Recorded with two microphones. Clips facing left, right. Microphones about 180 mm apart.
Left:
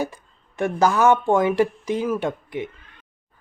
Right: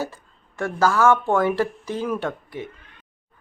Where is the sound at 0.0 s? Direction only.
15° left (ahead or behind).